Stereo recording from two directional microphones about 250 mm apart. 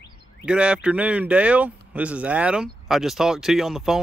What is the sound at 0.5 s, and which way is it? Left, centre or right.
Speech, centre.